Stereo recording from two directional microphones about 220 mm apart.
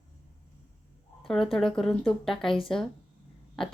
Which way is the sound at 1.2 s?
Centre (ahead or behind).